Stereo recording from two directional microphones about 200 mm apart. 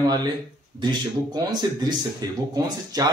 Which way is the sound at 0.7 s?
20° right (ahead or behind).